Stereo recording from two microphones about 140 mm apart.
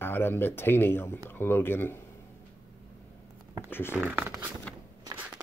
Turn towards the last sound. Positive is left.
turn(degrees=-10)  # may be behind; listen again after turning